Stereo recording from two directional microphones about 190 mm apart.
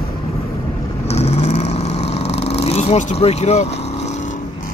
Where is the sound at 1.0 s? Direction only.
35° left (ahead or behind).